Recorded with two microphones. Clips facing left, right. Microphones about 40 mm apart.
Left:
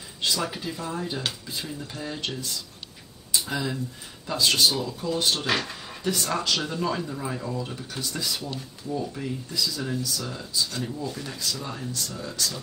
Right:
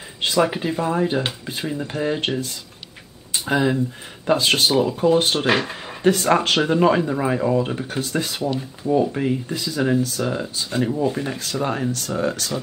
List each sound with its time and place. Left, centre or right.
0.2 s speech: right
5.5 s speech: right
6.0 s speech: right
11.6 s speech: right